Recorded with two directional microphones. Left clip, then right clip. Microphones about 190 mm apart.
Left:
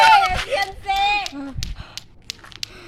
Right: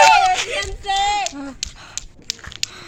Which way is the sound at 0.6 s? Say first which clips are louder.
Even; 40° left (ahead or behind).